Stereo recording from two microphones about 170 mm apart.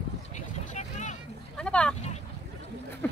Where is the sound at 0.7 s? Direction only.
45° left (ahead or behind).